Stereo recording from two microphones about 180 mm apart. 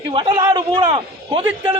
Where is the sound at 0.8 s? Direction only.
30° right (ahead or behind).